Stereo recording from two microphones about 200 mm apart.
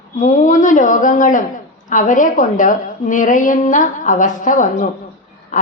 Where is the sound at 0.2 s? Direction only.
40° left (ahead or behind).